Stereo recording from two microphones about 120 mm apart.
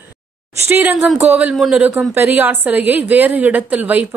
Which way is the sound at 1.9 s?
20° right (ahead or behind).